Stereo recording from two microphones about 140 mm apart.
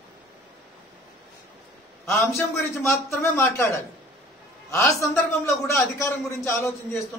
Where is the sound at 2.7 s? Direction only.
20° left (ahead or behind).